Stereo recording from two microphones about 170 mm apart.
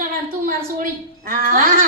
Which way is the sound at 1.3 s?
55° right (ahead or behind).